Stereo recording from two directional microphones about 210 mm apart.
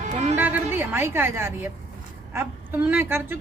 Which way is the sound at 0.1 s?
30° right (ahead or behind).